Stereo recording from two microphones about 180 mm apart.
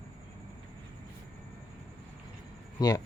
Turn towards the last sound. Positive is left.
turn(degrees=20)  # may be behind; listen again after turning